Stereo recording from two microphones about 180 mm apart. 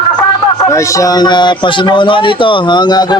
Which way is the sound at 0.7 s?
15° left (ahead or behind).